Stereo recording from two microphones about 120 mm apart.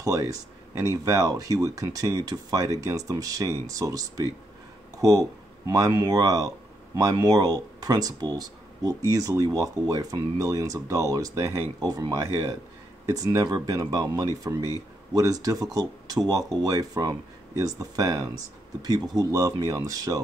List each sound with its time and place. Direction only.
0.0 s speech: 30° right (ahead or behind)
4.9 s a sound: 30° right (ahead or behind)
5.7 s speech: 30° right (ahead or behind)